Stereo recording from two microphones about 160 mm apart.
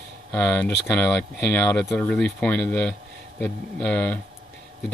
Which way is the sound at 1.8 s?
5° left (ahead or behind).